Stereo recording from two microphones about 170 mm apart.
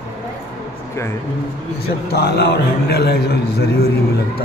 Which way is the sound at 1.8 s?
70° left (ahead or behind).